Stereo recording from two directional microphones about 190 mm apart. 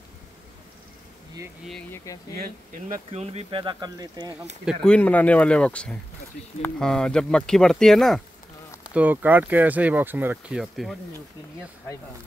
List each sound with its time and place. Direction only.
1.7 s speech: 5° left (ahead or behind)
2.9 s speech: 35° right (ahead or behind)
4.6 s speech: 5° left (ahead or behind)